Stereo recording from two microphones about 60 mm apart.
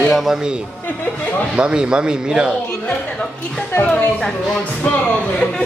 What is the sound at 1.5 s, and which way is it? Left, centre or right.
Speech, centre.